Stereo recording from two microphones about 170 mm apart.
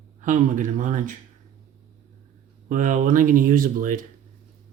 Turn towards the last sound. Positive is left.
turn(degrees=-55)  # may be behind; listen again after turning